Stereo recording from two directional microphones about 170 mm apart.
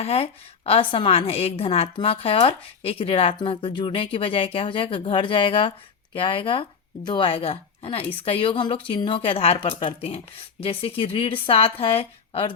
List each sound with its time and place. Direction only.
0.0 s a woman's voice: 35° left (ahead or behind)